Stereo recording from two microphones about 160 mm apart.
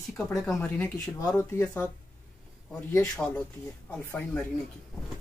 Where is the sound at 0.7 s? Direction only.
20° left (ahead or behind).